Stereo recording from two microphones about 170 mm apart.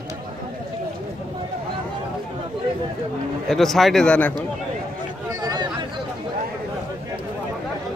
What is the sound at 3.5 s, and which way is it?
Speech, centre (ahead or behind).